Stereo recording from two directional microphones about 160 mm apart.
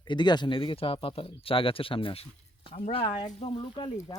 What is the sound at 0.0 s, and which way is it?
Speech, 25° left (ahead or behind).